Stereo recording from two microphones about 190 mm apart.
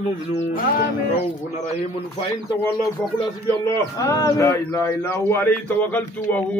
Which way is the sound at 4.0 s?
15° left (ahead or behind).